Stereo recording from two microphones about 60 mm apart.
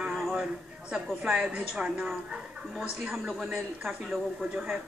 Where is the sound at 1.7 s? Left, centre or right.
Centre.